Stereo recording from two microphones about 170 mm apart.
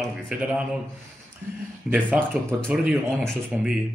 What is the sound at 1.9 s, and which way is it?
A man's voice, 10° right (ahead or behind).